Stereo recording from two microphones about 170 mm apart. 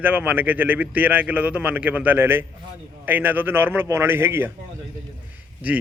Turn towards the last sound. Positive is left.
turn(degrees=-10)  # may be behind; listen again after turning